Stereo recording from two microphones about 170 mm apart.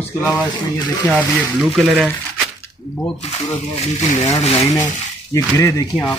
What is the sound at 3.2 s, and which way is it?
Speech, 35° left (ahead or behind).